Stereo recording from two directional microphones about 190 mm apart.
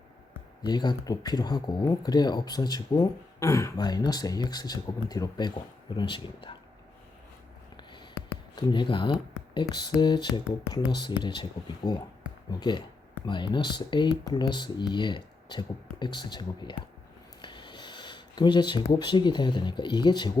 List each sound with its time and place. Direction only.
0.6 s speech: 20° left (ahead or behind)
8.5 s speech: 25° left (ahead or behind)